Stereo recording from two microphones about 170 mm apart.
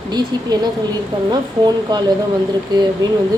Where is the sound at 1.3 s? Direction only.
25° right (ahead or behind).